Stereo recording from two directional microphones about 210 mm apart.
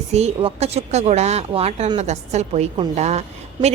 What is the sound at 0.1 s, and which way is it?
A woman's voice, 30° right (ahead or behind).